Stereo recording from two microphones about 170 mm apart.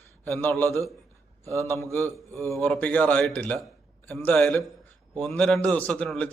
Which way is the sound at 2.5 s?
5° left (ahead or behind).